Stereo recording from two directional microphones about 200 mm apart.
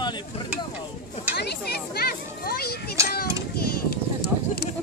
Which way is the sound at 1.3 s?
55° left (ahead or behind).